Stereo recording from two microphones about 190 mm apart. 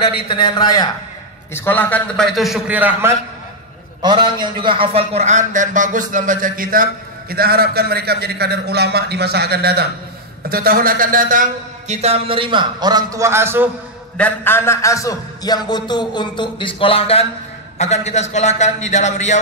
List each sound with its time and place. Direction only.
0.3 s a man's voice: 25° left (ahead or behind)
1.5 s a man's voice: 10° left (ahead or behind); by 3.2 s 10° right (ahead or behind)
4.0 s a man's voice: 25° right (ahead or behind); by 11.4 s 45° right (ahead or behind)
11.9 s a man's voice: 35° right (ahead or behind); by 13.7 s 10° right (ahead or behind)
14.1 s a man's voice: 10° left (ahead or behind); by 19.4 s 40° left (ahead or behind)